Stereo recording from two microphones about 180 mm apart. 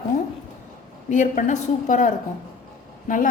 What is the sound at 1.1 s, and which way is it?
A woman's voice, 45° left (ahead or behind).